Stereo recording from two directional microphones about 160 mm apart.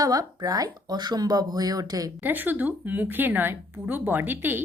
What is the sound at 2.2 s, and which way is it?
A woman's voice, 10° right (ahead or behind).